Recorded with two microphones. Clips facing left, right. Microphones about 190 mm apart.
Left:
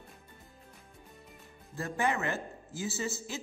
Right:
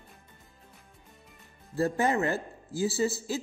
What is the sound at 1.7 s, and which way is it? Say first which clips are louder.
A man's voice: right 6 dB; 35° right (ahead or behind).